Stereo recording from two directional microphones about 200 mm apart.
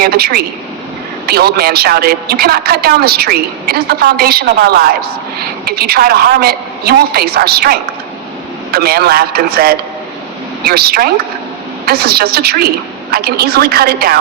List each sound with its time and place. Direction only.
0.0 s a woman's voice: 50° right (ahead or behind)